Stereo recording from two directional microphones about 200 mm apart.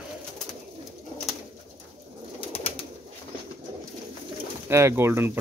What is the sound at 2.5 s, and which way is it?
Pigeon, 30° left (ahead or behind).